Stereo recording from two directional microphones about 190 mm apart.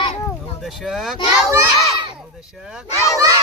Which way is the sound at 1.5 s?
20° right (ahead or behind).